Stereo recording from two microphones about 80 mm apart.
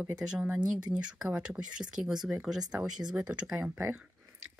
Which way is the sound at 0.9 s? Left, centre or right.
Centre.